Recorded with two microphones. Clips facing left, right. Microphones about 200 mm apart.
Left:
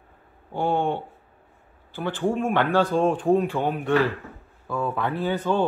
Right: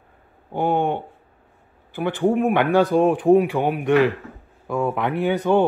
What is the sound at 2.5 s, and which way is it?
A man's voice, 15° right (ahead or behind).